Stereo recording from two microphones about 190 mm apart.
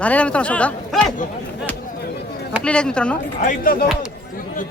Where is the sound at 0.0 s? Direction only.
5° left (ahead or behind).